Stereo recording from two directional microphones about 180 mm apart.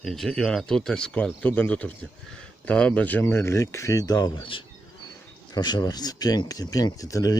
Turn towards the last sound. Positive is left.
turn(degrees=20)  # may be behind; listen again after turning